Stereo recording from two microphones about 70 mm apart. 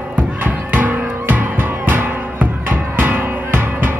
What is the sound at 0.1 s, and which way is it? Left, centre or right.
Music, right.